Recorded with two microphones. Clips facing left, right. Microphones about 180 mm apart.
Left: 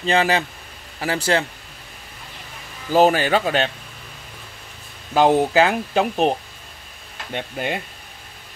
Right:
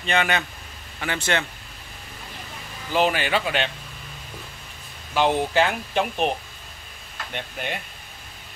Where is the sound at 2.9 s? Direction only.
40° left (ahead or behind).